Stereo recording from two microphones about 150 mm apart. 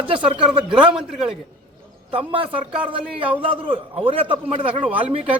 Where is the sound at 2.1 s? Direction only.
35° right (ahead or behind).